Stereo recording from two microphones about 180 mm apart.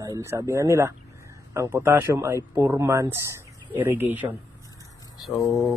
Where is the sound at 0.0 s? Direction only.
15° right (ahead or behind).